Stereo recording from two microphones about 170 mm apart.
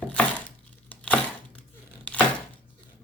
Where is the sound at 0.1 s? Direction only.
10° left (ahead or behind).